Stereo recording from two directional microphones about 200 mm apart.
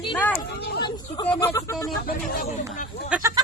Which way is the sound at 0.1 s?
5° left (ahead or behind).